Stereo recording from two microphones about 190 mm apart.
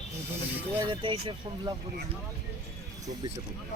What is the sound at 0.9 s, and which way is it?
Speech, 25° right (ahead or behind).